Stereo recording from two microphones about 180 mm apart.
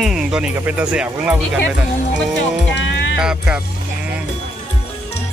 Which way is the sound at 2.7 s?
80° left.